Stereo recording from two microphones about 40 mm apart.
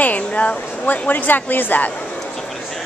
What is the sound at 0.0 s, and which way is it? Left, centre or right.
Speech, left.